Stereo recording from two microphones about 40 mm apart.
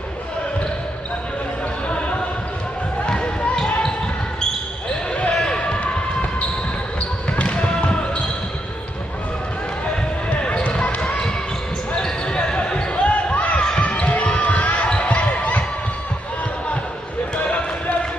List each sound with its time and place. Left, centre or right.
1.9 s basketball bounce: left
5.3 s basketball bounce: left
7.3 s basketball bounce: left
10.3 s basketball bounce: left
17.4 s basketball bounce: left